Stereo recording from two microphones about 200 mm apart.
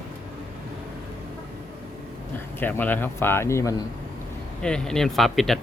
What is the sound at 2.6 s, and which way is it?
Speech, 10° left (ahead or behind).